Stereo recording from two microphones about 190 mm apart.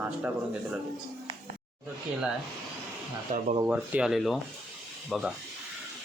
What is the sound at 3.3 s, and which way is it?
Speech, 40° right (ahead or behind).